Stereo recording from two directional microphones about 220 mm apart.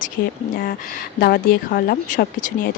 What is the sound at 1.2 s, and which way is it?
Speech, 40° left (ahead or behind).